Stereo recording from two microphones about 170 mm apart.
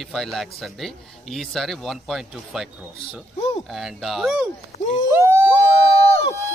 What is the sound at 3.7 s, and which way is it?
Speech, centre (ahead or behind).